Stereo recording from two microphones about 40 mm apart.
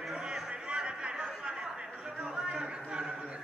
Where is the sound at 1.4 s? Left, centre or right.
Right.